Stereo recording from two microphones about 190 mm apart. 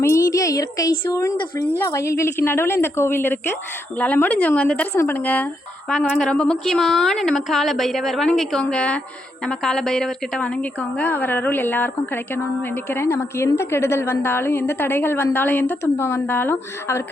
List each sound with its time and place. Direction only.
0.0 s a woman's voice: 15° left (ahead or behind)